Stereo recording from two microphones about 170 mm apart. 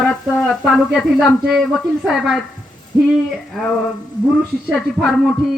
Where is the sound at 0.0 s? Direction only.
5° left (ahead or behind).